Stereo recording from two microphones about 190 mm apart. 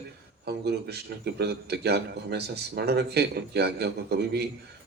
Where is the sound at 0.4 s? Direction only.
60° right (ahead or behind).